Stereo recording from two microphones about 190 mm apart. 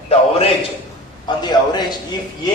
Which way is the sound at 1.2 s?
20° left (ahead or behind).